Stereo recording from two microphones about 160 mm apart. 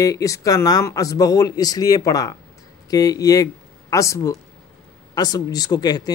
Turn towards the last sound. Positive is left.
turn(degrees=25)  # may be behind; listen again after turning